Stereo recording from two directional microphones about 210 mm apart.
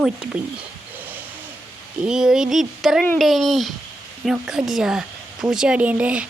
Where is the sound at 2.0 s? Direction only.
5° right (ahead or behind).